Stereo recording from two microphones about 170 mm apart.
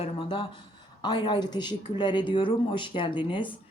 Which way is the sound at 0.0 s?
30° left (ahead or behind).